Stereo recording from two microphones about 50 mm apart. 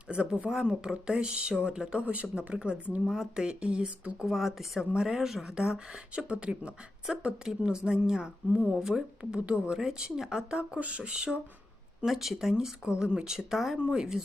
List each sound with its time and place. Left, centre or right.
0.1 s speech: right
3.1 s speech: centre
4.3 s speech: centre
8.6 s speech: centre
8.9 s speech: centre
12.0 s speech: centre